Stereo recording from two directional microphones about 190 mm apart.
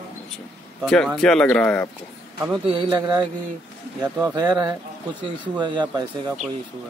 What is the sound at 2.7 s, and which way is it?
Speech, 20° right (ahead or behind).